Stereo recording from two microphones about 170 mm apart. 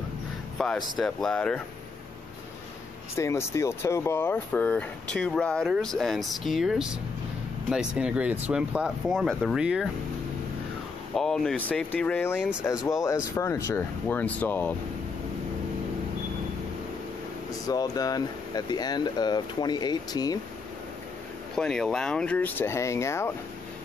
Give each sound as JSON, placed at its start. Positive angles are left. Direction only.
{"t": 0.6, "sound": "speech", "side_deg": 0}
{"t": 3.2, "sound": "speech", "side_deg": 15}
{"t": 11.1, "sound": "speech", "side_deg": 5}
{"t": 17.5, "sound": "speech", "side_deg": 20}
{"t": 21.5, "sound": "speech", "side_deg": 5}